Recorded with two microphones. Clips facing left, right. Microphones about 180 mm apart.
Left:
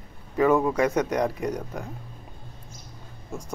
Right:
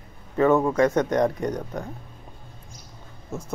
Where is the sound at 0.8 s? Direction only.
10° left (ahead or behind).